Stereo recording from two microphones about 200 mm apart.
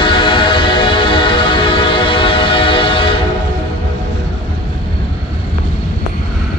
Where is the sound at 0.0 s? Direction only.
25° left (ahead or behind).